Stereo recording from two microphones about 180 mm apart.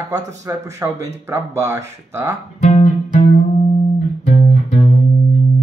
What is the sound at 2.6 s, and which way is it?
Music, 35° left (ahead or behind).